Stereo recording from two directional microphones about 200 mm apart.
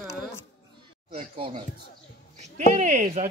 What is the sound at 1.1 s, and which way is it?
Speech, 30° right (ahead or behind).